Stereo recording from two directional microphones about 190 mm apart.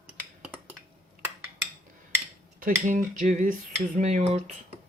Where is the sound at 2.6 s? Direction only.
40° right (ahead or behind).